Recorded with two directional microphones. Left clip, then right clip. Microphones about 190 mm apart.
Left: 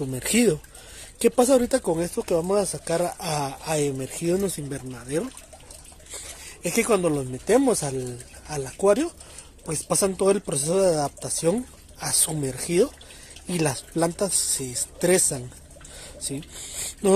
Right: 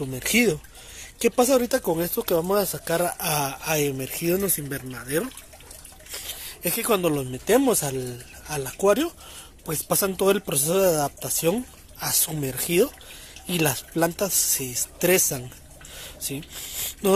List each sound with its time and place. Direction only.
0.1 s speech: 20° left (ahead or behind); by 5.3 s 5° left (ahead or behind)
6.6 s speech: 5° left (ahead or behind)
15.9 s a sound: 10° left (ahead or behind)